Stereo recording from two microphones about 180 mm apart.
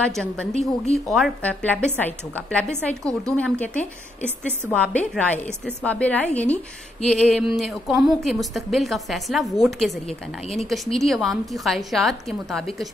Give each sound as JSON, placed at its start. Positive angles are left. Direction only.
{"t": 0.1, "sound": "a woman's voice", "side_deg": 5}
{"t": 0.6, "sound": "speech", "side_deg": 35}
{"t": 1.1, "sound": "a woman's voice", "side_deg": 0}